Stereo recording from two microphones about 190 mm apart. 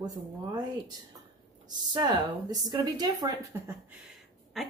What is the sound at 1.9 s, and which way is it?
Speech, 20° right (ahead or behind).